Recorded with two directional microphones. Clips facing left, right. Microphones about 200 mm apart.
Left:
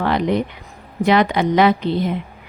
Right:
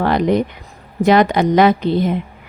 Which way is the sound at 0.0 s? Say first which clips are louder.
Right 3 dB; 45° right (ahead or behind).